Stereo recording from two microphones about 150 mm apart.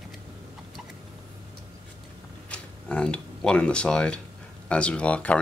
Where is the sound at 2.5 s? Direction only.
5° left (ahead or behind).